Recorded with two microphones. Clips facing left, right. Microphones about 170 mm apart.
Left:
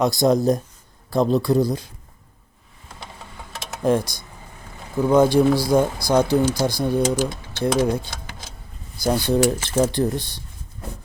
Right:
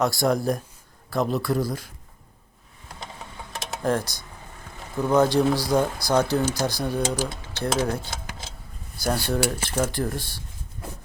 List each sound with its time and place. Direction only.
0.0 s speech: 20° left (ahead or behind)
3.8 s speech: 15° left (ahead or behind)